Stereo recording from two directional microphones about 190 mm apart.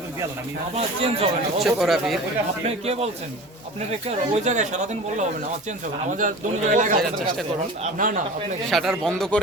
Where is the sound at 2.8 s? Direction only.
35° right (ahead or behind).